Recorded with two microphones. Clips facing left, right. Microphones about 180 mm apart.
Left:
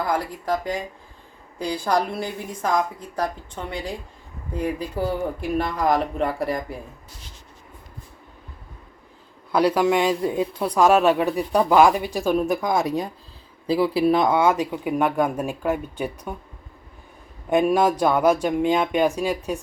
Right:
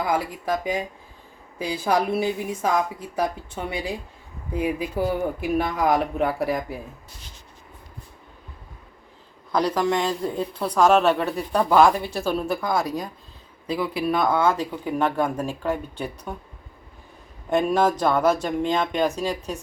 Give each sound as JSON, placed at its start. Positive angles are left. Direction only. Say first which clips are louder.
{"t": 0.0, "sound": "a woman's voice", "louder": "even", "side_deg": -5}
{"t": 9.5, "sound": "speech", "louder": "left 3 dB", "side_deg": 10}
{"t": 17.5, "sound": "speech", "louder": "left 2 dB", "side_deg": 10}